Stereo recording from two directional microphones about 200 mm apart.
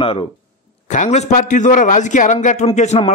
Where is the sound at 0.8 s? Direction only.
35° left (ahead or behind).